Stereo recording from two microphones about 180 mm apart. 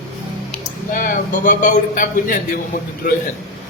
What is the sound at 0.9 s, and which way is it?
A man's voice, 50° left (ahead or behind).